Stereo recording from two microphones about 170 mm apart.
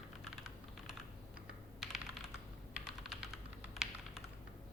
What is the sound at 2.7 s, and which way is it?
Typing, 5° right (ahead or behind).